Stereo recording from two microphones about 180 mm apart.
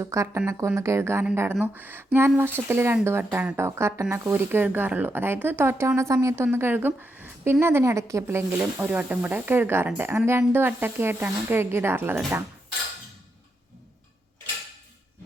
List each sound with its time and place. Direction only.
0.0 s speech: 15° right (ahead or behind)